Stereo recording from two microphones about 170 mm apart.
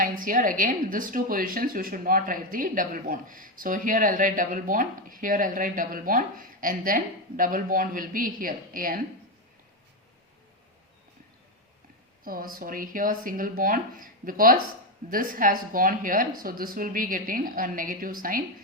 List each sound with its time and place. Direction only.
0.0 s a woman's voice: 50° right (ahead or behind)
12.2 s speech: 55° right (ahead or behind)